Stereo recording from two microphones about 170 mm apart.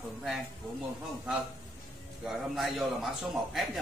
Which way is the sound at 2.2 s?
Centre (ahead or behind).